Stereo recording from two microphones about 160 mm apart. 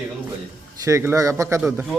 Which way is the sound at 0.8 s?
20° right (ahead or behind).